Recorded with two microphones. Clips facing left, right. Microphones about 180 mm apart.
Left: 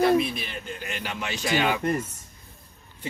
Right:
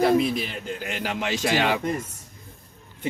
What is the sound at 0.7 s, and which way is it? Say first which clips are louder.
A man's voice: right 4 dB; 90° right.